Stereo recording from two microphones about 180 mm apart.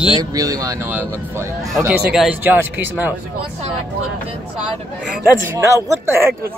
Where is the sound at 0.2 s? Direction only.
20° right (ahead or behind).